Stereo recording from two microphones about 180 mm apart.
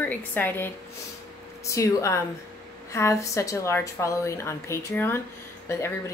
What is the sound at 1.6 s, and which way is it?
Speech, 15° left (ahead or behind).